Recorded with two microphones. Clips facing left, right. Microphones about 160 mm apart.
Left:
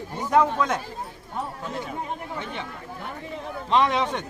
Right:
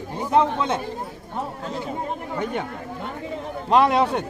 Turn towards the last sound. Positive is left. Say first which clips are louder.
# right 4 dB
turn(degrees=-40)  # may be behind; listen again after turning